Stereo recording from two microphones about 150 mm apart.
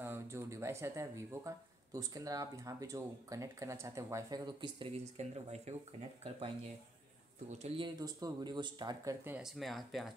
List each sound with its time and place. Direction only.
0.0 s speech: 15° right (ahead or behind); by 4.8 s 30° right (ahead or behind)
5.1 s speech: 45° right (ahead or behind)
7.4 s speech: 45° right (ahead or behind)
7.8 s speech: 25° right (ahead or behind)
9.2 s speech: 10° right (ahead or behind)
9.6 s speech: centre (ahead or behind)